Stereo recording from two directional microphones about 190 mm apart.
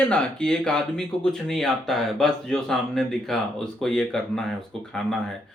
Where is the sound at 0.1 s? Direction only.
5° left (ahead or behind).